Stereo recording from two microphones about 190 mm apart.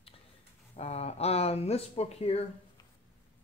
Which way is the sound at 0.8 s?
35° left (ahead or behind).